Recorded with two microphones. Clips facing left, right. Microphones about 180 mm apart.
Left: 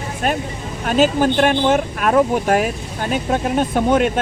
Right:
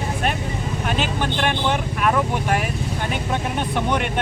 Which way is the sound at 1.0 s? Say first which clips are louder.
Left 11 dB; 40° left (ahead or behind).